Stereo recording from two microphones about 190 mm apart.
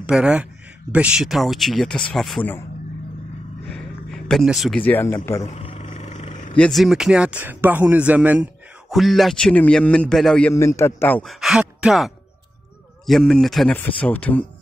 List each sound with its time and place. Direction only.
0.0 s speech: 5° right (ahead or behind)
3.6 s speech: 5° left (ahead or behind)
5.5 s a sound: 35° left (ahead or behind)
6.5 s speech: 5° left (ahead or behind)
10.5 s speech: 15° left (ahead or behind)